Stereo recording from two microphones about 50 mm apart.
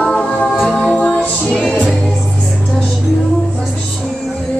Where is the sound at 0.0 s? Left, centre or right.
Centre.